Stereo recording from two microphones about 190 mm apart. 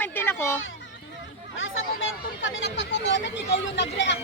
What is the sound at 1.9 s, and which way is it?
Speech, 90° left.